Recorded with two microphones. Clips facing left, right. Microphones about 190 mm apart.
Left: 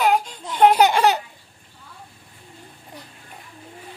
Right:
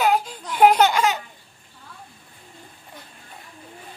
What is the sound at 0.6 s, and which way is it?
Laughter, 5° right (ahead or behind).